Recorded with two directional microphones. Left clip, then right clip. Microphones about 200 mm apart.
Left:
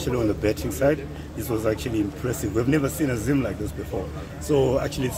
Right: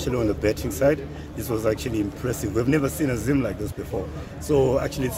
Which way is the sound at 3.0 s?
20° right (ahead or behind).